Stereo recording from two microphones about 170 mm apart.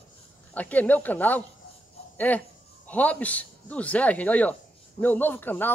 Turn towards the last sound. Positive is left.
turn(degrees=10)  # may be behind; listen again after turning